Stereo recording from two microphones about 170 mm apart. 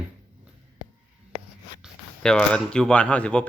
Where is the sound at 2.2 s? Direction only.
5° left (ahead or behind).